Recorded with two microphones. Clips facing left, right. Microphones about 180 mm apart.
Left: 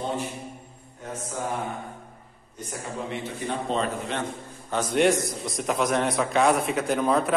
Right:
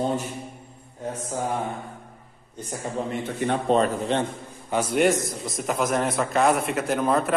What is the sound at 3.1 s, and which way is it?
Speech, 55° right (ahead or behind).